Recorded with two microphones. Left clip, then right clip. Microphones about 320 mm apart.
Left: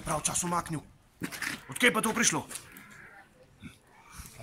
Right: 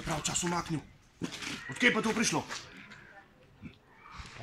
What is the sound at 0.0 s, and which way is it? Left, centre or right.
Speech, centre.